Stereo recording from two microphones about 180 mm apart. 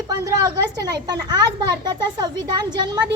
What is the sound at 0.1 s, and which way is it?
A woman's voice, 20° right (ahead or behind).